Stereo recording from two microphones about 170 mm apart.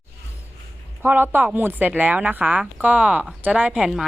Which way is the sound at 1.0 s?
10° right (ahead or behind).